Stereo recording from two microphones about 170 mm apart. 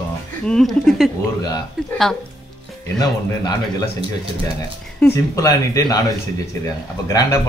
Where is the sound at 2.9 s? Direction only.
20° left (ahead or behind).